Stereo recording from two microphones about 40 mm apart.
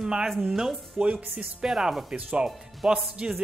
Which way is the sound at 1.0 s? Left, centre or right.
Right.